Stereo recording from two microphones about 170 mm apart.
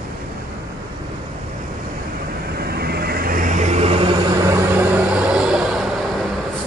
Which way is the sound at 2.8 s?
65° right (ahead or behind).